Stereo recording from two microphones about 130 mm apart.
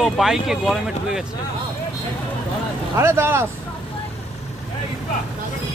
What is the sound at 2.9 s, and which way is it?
Speech, 20° right (ahead or behind).